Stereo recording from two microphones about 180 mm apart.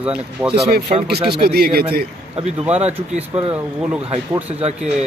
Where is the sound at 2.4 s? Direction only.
35° right (ahead or behind).